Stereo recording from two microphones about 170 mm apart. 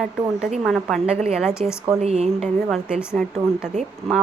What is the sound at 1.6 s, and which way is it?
Speech, 40° right (ahead or behind).